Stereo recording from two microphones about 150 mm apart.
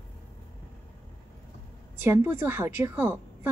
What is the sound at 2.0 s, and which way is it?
A woman's voice, 15° right (ahead or behind).